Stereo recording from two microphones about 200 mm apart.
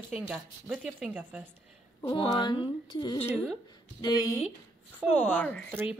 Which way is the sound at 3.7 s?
20° left (ahead or behind).